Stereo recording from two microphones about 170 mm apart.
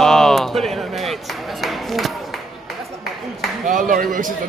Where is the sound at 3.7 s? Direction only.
50° right (ahead or behind).